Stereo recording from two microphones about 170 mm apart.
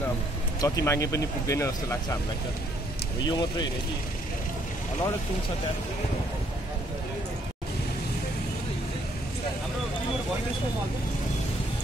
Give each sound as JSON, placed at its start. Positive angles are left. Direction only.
{"t": 0.6, "sound": "speech", "side_deg": 20}
{"t": 3.2, "sound": "speech", "side_deg": 25}